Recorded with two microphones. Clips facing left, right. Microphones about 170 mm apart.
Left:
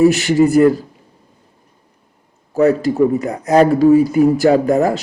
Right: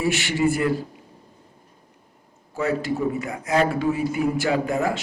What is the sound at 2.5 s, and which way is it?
A man's voice, 40° left (ahead or behind).